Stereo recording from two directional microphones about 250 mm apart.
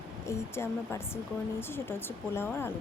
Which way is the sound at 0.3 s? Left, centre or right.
Centre.